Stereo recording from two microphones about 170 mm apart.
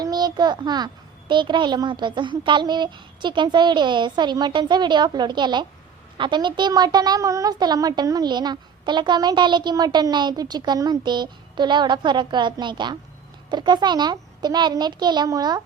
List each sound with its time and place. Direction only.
0.0 s a child's voice: 25° right (ahead or behind)